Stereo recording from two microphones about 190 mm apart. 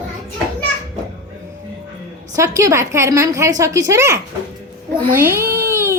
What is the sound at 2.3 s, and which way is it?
A woman's voice, 15° right (ahead or behind).